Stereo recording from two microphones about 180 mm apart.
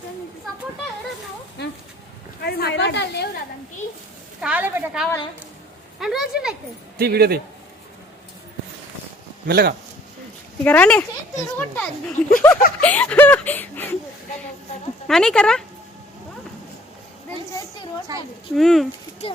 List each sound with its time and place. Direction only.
2.4 s a woman's voice: 60° left (ahead or behind)
4.4 s a woman's voice: 5° right (ahead or behind)
7.0 s a man's voice: 60° right (ahead or behind)
9.5 s a man's voice: 60° right (ahead or behind)
10.6 s speech: 10° left (ahead or behind)
15.0 s speech: centre (ahead or behind)
18.5 s speech: centre (ahead or behind)